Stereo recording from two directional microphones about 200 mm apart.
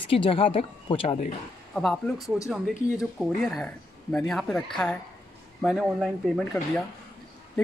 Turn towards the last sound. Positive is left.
turn(degrees=0)  # may be behind; listen again after turning